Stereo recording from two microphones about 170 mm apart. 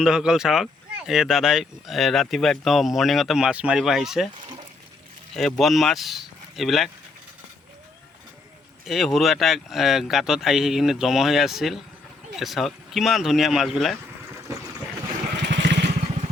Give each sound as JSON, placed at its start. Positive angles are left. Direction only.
{"t": 0.0, "sound": "speech", "side_deg": -5}
{"t": 5.3, "sound": "speech", "side_deg": 0}
{"t": 8.8, "sound": "speech", "side_deg": 0}
{"t": 15.4, "sound": "vehicle", "side_deg": -90}